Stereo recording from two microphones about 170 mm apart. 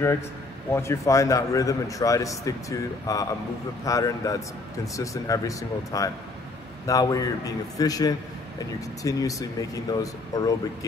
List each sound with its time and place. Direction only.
0.7 s a man's voice: 15° left (ahead or behind)